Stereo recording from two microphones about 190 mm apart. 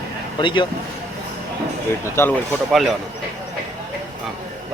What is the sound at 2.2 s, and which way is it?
Speech, 15° left (ahead or behind).